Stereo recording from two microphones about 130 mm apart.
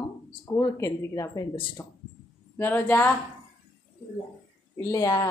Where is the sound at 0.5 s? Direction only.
25° left (ahead or behind).